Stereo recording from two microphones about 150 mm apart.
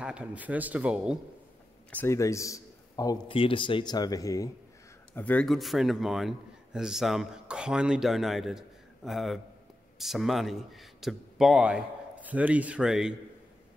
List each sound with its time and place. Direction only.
0.0 s speech: 5° right (ahead or behind)
1.9 s a man's voice: 15° left (ahead or behind)
3.3 s speech: 35° left (ahead or behind)
5.1 s a man's voice: 10° left (ahead or behind)